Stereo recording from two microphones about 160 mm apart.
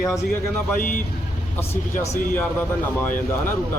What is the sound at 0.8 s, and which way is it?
Speech, 55° left (ahead or behind).